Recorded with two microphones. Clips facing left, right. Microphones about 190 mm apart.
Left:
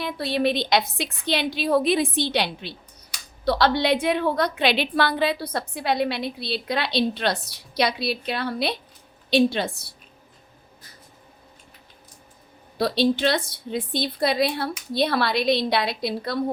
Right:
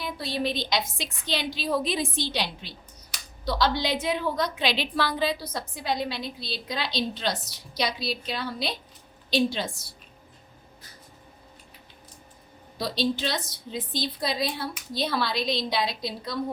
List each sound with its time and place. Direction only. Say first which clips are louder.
0.0 s a woman's voice: left 6 dB; 65° left (ahead or behind)
12.7 s a woman's voice: left 6 dB; 60° left (ahead or behind)